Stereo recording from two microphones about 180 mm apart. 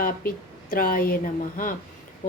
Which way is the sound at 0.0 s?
50° left (ahead or behind).